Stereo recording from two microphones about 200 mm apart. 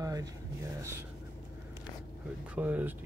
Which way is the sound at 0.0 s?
15° right (ahead or behind).